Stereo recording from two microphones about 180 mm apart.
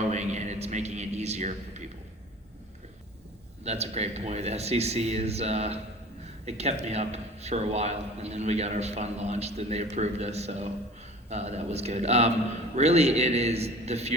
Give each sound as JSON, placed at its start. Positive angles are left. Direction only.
{"t": 0.1, "sound": "a man's voice", "side_deg": -40}
{"t": 3.6, "sound": "a man's voice", "side_deg": -35}